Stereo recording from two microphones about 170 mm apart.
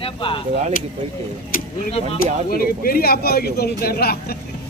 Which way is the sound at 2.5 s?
60° left (ahead or behind).